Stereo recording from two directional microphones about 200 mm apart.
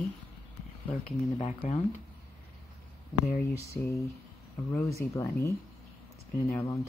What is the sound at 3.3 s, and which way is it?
Speech, 10° left (ahead or behind).